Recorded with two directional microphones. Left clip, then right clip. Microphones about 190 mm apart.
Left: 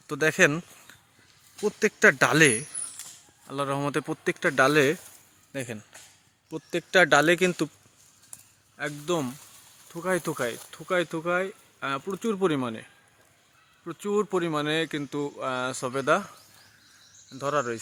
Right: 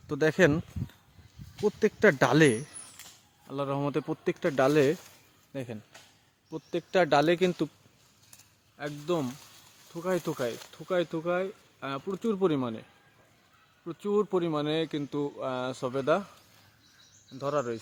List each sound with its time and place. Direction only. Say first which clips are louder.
0.1 s speech: left 2 dB; 20° right (ahead or behind)
1.8 s speech: left 4 dB; 15° right (ahead or behind)
3.4 s speech: left 3 dB; centre (ahead or behind)
8.8 s speech: left 3 dB; 10° left (ahead or behind)
13.8 s speech: left 1 dB; centre (ahead or behind)
17.3 s speech: left 3 dB; 5° left (ahead or behind)